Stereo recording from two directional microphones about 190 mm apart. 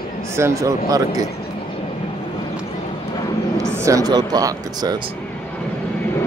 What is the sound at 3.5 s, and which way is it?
Speech, 15° right (ahead or behind).